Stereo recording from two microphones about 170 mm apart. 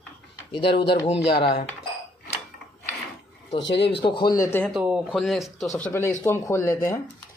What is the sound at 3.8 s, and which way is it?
Speech, 35° left (ahead or behind).